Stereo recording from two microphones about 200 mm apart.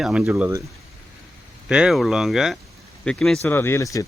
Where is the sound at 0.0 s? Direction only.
5° right (ahead or behind).